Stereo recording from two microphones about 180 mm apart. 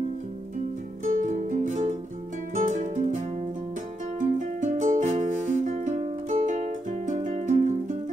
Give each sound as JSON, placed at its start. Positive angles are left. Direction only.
{"t": 1.0, "sound": "music", "side_deg": -45}